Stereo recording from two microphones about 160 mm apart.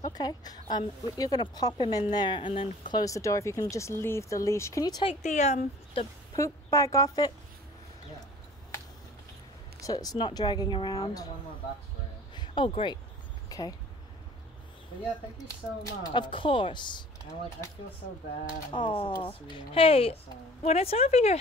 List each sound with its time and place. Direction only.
0.0 s speech: 25° left (ahead or behind)
2.9 s speech: 20° left (ahead or behind)
5.2 s speech: 45° left (ahead or behind)
6.3 s speech: 20° left (ahead or behind)
9.8 s speech: 25° left (ahead or behind)
12.4 s speech: 30° left (ahead or behind)
15.8 s speech: 25° left (ahead or behind)
18.7 s speech: 30° left (ahead or behind)